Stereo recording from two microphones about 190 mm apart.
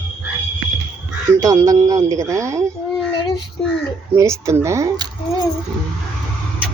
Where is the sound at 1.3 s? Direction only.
20° right (ahead or behind).